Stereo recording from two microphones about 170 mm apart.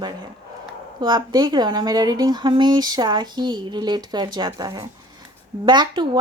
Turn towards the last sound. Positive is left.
turn(degrees=-25)  # may be behind; listen again after turning